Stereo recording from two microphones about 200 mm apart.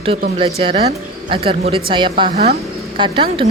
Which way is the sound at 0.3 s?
30° right (ahead or behind).